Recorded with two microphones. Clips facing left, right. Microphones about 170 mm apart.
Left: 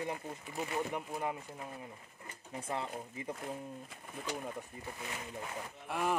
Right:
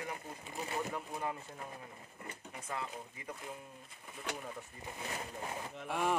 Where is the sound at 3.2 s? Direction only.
25° left (ahead or behind).